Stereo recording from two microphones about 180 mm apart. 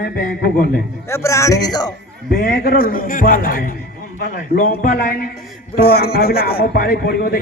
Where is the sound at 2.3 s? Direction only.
55° left (ahead or behind).